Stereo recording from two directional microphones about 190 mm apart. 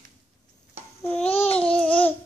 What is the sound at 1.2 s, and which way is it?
Babbling, 30° left (ahead or behind).